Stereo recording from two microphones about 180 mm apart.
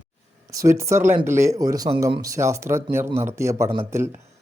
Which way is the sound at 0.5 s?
15° right (ahead or behind).